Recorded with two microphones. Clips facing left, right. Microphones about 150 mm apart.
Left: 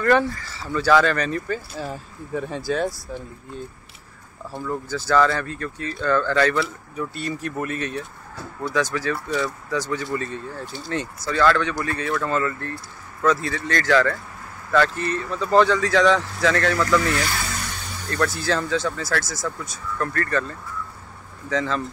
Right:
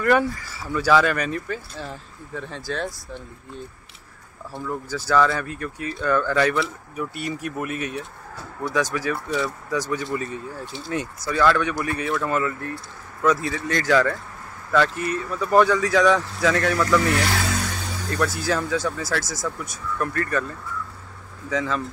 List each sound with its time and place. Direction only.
0.0 s speech: 10° right (ahead or behind)
17.2 s speech: 65° right (ahead or behind)
18.1 s speech: 10° right (ahead or behind)